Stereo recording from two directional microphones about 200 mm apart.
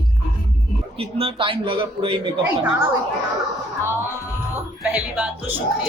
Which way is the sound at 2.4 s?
10° right (ahead or behind).